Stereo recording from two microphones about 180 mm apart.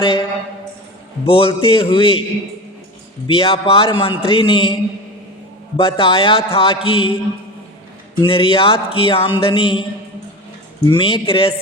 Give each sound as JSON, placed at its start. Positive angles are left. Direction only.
{"t": 0.0, "sound": "a man's voice", "side_deg": 25}
{"t": 3.2, "sound": "a man's voice", "side_deg": 30}
{"t": 8.2, "sound": "a man's voice", "side_deg": 30}
{"t": 10.8, "sound": "a man's voice", "side_deg": 25}